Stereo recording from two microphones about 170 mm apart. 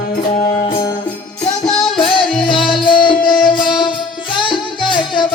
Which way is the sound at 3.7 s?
30° left (ahead or behind).